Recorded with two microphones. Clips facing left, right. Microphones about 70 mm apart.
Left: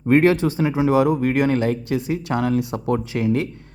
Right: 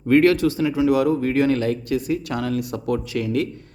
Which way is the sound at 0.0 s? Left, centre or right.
Left.